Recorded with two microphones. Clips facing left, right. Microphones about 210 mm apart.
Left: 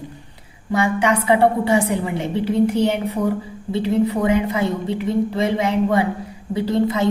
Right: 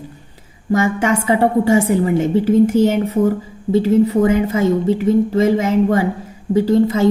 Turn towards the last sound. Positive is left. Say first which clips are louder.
# right 5 dB
turn(degrees=-45)  # may be behind; listen again after turning